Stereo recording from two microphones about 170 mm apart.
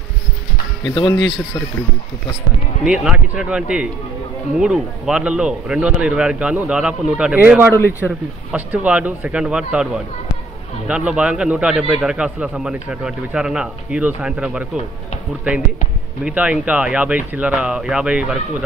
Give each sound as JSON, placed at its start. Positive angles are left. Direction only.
{"t": 0.8, "sound": "speech", "side_deg": 25}
{"t": 2.8, "sound": "speech", "side_deg": -5}
{"t": 8.0, "sound": "speech", "side_deg": 5}
{"t": 10.9, "sound": "speech", "side_deg": -5}
{"t": 16.3, "sound": "speech", "side_deg": -10}